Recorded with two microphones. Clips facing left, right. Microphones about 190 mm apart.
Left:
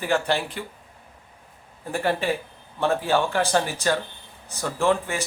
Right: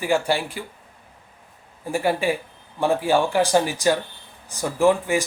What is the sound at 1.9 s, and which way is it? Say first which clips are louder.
A man's voice: right 2 dB; 10° right (ahead or behind).